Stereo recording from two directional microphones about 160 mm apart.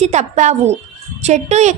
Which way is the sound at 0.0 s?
45° right (ahead or behind).